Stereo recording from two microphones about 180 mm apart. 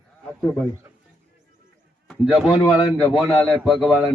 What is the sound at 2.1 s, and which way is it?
A man's voice, centre (ahead or behind).